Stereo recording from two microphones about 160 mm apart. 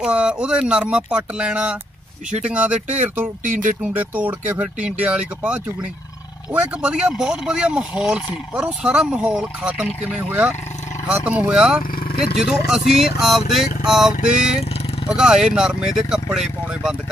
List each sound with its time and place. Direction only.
0.0 s speech: 5° right (ahead or behind)
11.9 s speech: 65° left (ahead or behind)
12.4 s speech: 5° right (ahead or behind)